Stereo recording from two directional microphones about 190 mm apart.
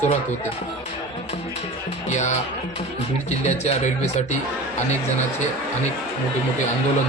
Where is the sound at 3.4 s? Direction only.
35° left (ahead or behind).